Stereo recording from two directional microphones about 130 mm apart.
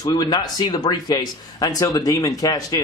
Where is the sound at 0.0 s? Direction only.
30° left (ahead or behind).